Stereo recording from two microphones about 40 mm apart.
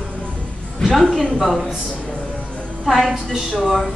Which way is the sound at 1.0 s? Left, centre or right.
Centre.